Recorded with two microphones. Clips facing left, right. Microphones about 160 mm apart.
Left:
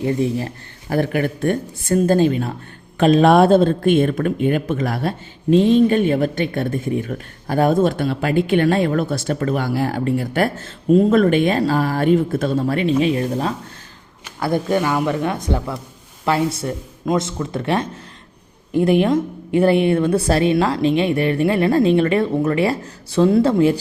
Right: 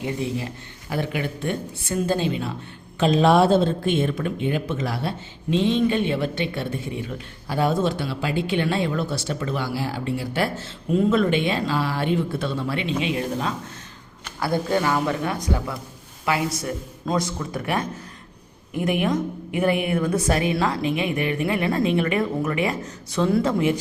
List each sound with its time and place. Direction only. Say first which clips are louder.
0.3 s a woman's voice: left 5 dB; 45° left (ahead or behind)
14.3 s a woman's voice: left 4 dB; 20° left (ahead or behind)